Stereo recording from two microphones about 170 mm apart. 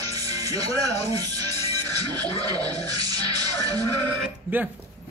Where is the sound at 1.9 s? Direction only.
25° right (ahead or behind).